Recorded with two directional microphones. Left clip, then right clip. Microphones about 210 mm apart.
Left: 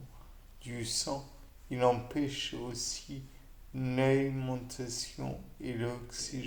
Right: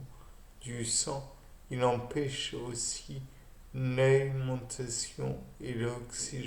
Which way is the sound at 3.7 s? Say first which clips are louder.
Right 3 dB; 40° left (ahead or behind).